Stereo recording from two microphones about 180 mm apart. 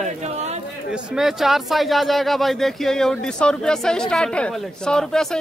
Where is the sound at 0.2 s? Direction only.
40° right (ahead or behind).